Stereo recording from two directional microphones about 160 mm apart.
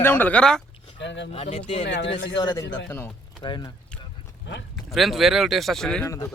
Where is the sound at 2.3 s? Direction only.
25° left (ahead or behind).